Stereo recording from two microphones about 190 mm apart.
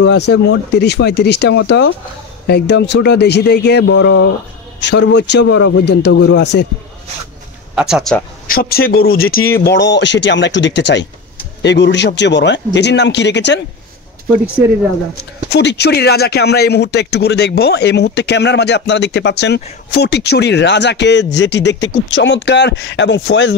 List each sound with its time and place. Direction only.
0.0 s speech: 65° left (ahead or behind)
7.7 s speech: 5° right (ahead or behind)
8.5 s speech: 55° left (ahead or behind)
15.5 s speech: 60° left (ahead or behind)